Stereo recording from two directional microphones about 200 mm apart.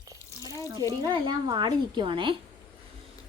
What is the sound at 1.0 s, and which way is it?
A woman's voice, 20° right (ahead or behind).